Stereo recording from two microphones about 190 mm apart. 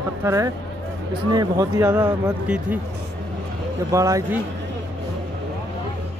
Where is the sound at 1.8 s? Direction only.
10° right (ahead or behind).